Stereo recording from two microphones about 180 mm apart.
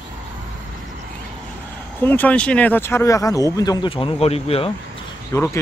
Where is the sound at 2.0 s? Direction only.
10° left (ahead or behind); by 4.6 s 35° left (ahead or behind).